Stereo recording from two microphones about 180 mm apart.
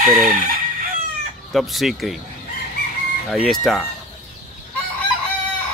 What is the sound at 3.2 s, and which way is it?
Chicken, centre (ahead or behind).